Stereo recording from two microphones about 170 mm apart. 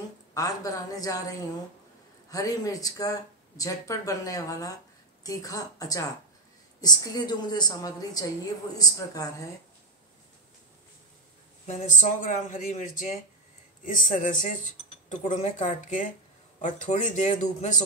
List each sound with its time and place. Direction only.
0.3 s speech: 20° left (ahead or behind)
2.3 s speech: 20° left (ahead or behind)
11.6 s speech: 45° left (ahead or behind)